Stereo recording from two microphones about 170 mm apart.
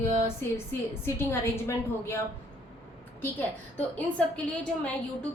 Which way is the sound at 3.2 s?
10° left (ahead or behind).